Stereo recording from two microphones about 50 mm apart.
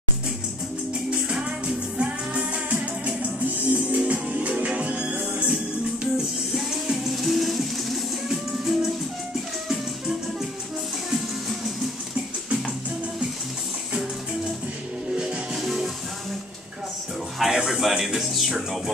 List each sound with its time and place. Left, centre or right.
1.1 s music: right
6.5 s music: centre
15.5 s music: centre
17.5 s music: centre